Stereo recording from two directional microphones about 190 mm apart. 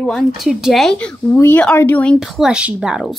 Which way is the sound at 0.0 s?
Centre (ahead or behind).